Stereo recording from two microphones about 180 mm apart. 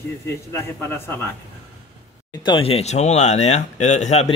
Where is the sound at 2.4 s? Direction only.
30° left (ahead or behind).